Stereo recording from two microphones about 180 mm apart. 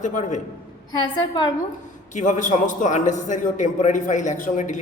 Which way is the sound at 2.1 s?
45° left (ahead or behind).